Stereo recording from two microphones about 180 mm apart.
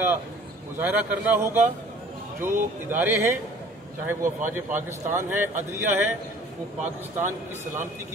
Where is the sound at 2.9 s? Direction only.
10° right (ahead or behind).